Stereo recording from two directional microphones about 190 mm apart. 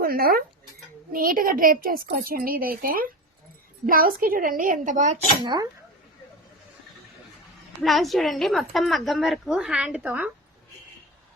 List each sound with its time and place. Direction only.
0.0 s a woman's voice: 50° right (ahead or behind)
5.4 s speech: 25° right (ahead or behind)
7.8 s a woman's voice: centre (ahead or behind)